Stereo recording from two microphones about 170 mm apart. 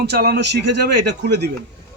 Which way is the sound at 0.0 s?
70° right (ahead or behind).